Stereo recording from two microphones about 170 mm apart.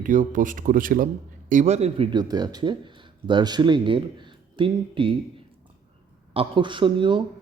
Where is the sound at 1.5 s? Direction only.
45° right (ahead or behind).